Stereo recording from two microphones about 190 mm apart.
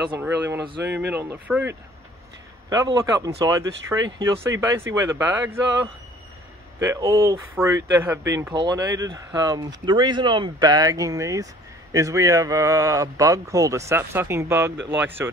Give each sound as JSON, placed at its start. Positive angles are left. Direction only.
{"t": 0.1, "sound": "a man's voice", "side_deg": -10}